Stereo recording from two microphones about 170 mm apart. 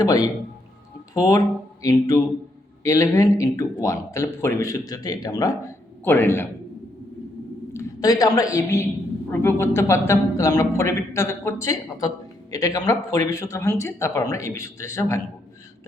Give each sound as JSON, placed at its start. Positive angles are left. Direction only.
{"t": 0.0, "sound": "a man's voice", "side_deg": 20}
{"t": 7.7, "sound": "a woman's voice", "side_deg": 15}